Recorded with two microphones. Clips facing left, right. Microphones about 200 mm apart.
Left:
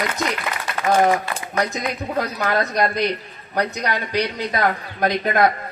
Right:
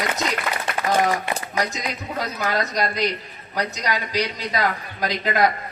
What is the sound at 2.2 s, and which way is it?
A man's voice, 55° left (ahead or behind).